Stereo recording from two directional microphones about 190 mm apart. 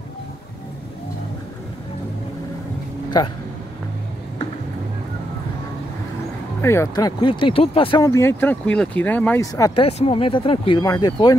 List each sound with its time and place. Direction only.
6.6 s speech: 15° left (ahead or behind)
8.1 s speech: 10° left (ahead or behind)
9.8 s speech: 30° left (ahead or behind)